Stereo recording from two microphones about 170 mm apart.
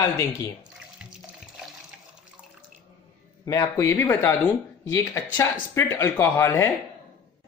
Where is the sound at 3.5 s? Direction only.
15° left (ahead or behind).